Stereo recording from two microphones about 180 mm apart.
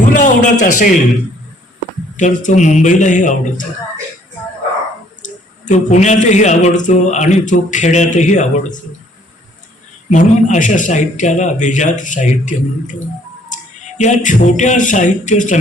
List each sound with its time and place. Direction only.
0.1 s a sound: 45° left (ahead or behind)
0.6 s a man's voice: 45° left (ahead or behind)
2.1 s a man's voice: 45° left (ahead or behind)
5.2 s speech: 40° left (ahead or behind)
10.1 s a man's voice: 45° left (ahead or behind)
14.0 s a man's voice: 45° left (ahead or behind)